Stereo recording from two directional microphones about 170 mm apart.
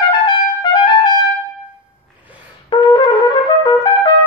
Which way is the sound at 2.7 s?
25° left (ahead or behind).